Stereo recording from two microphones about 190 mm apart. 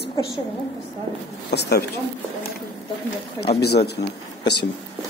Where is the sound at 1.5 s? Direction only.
60° left (ahead or behind).